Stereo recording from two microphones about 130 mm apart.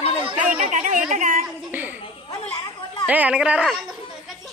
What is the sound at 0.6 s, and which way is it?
Speech, 75° right (ahead or behind).